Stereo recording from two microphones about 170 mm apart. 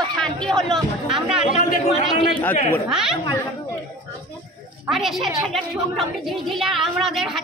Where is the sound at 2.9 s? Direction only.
5° right (ahead or behind).